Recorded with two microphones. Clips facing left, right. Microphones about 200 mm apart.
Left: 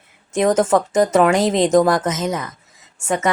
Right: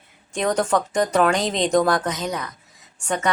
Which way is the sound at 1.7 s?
20° left (ahead or behind).